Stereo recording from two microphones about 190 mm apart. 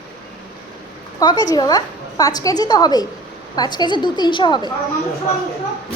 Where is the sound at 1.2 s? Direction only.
25° left (ahead or behind).